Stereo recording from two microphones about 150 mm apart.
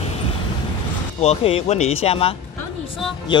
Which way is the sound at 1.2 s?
40° left (ahead or behind).